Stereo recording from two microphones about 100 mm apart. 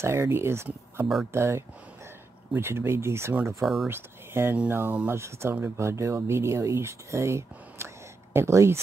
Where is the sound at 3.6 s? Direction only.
Centre (ahead or behind).